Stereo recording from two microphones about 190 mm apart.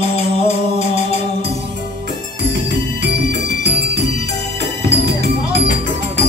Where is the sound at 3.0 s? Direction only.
60° right (ahead or behind).